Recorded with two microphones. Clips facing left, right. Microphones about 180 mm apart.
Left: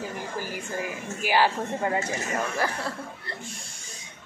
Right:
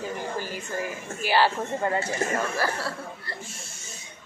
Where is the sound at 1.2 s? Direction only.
15° left (ahead or behind).